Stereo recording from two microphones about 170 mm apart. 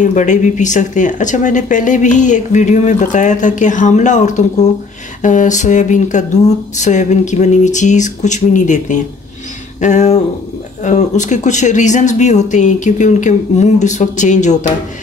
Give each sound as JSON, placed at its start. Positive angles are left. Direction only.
{"t": 0.0, "sound": "speech", "side_deg": 45}